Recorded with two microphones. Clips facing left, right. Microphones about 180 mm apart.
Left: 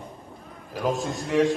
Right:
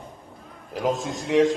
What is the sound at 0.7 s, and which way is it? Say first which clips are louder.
Speech: right 1 dB; 20° right (ahead or behind).